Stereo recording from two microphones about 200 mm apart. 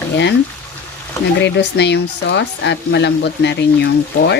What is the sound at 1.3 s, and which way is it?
Speech, 60° left (ahead or behind).